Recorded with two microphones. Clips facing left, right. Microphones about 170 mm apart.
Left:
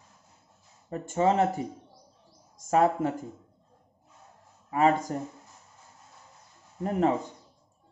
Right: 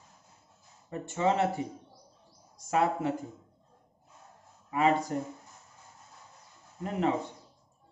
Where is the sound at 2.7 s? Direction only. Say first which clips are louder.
Left 4 dB; 45° left (ahead or behind).